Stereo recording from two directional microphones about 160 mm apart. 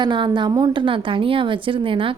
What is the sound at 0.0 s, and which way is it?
A woman's voice, 30° right (ahead or behind).